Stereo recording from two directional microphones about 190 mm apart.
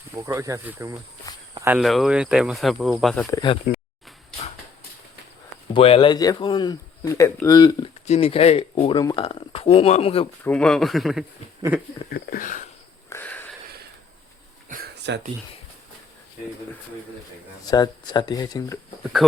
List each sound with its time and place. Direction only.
0.1 s speech: 15° right (ahead or behind)
1.8 s speech: centre (ahead or behind)
3.3 s speech: 25° left (ahead or behind)
5.7 s speech: 30° left (ahead or behind)
8.0 s speech: 35° left (ahead or behind)
10.4 s speech: 5° left (ahead or behind)
12.1 s speech: 45° left (ahead or behind)
13.1 s a sound: 10° left (ahead or behind)
15.1 s speech: 65° right (ahead or behind)
17.7 s speech: 20° left (ahead or behind)